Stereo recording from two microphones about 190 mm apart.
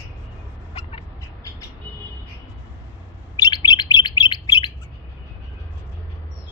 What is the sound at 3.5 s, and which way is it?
Bird, 20° left (ahead or behind).